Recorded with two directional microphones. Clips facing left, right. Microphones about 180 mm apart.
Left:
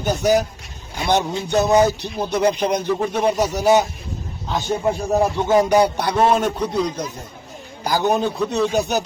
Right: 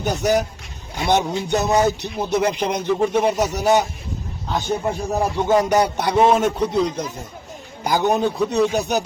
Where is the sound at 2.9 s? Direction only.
Centre (ahead or behind).